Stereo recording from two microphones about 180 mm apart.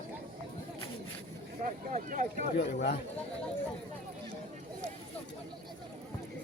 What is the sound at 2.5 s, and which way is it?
Speech, 65° left (ahead or behind).